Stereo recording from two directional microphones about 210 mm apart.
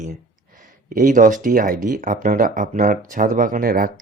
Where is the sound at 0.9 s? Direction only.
40° right (ahead or behind).